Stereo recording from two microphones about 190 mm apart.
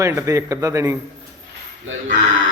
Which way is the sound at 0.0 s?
15° right (ahead or behind).